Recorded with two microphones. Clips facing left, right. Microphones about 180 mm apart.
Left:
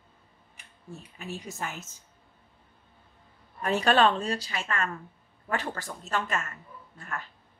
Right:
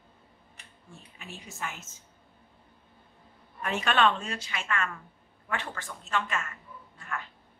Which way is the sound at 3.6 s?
35° left (ahead or behind).